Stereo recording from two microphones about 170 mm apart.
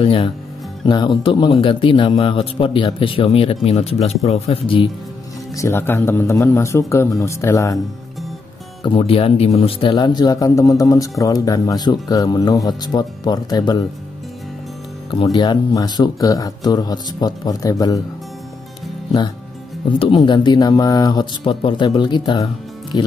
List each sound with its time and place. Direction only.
0.0 s a man's voice: 35° left (ahead or behind)
5.6 s speech: 15° left (ahead or behind)
8.8 s speech: 35° left (ahead or behind)
15.0 s speech: 25° left (ahead or behind)
20.0 s speech: 30° left (ahead or behind)